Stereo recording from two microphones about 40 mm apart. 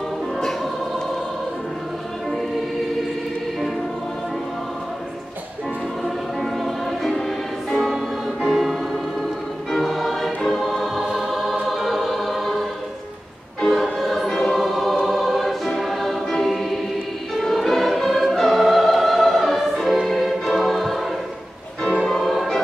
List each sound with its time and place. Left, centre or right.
0.4 s music: centre
6.0 s choir: centre
9.8 s music: centre
11.6 s choir: centre
13.6 s music: centre
13.9 s choir: centre
14.3 s choir: centre
14.6 s choir: centre
16.3 s music: centre
22.0 s music: centre